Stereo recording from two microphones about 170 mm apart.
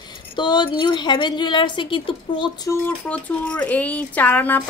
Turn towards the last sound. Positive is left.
turn(degrees=10)  # may be behind; listen again after turning